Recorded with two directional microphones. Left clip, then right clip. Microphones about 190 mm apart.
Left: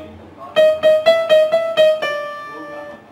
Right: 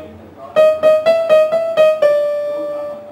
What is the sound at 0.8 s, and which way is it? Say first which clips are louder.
Music: right 1 dB; 30° right (ahead or behind).